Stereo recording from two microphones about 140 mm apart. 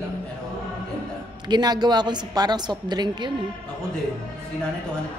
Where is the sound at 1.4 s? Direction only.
30° right (ahead or behind).